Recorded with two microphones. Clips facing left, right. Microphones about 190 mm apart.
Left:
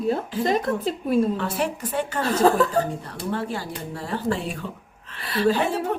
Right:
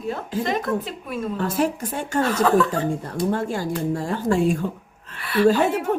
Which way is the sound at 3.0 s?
45° right (ahead or behind).